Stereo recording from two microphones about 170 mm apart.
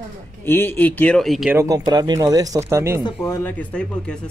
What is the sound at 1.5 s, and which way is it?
Speech, 15° right (ahead or behind).